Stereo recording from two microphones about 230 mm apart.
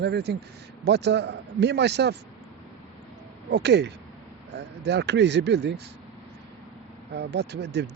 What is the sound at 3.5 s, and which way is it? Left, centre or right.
Speech, right.